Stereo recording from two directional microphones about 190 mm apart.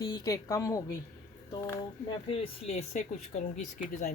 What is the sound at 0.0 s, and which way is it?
Speech, 20° left (ahead or behind).